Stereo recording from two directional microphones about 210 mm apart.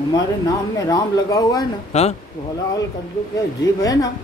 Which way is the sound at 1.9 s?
30° left (ahead or behind).